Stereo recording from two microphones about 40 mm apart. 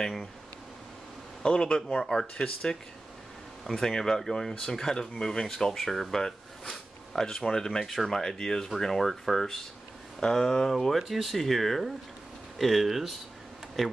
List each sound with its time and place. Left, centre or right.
0.0 s speech: centre
1.4 s speech: centre
3.7 s speech: centre
11.0 s speech: centre